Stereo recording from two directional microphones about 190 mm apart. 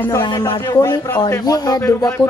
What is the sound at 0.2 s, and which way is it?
A woman's voice, 25° left (ahead or behind).